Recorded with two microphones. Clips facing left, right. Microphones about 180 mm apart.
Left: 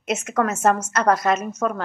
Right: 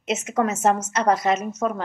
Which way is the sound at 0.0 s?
20° right (ahead or behind).